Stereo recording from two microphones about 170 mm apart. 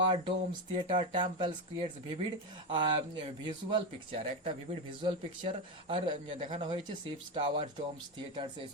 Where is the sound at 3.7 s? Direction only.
30° right (ahead or behind).